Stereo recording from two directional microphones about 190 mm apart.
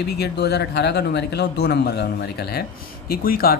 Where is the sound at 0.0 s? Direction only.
60° left (ahead or behind).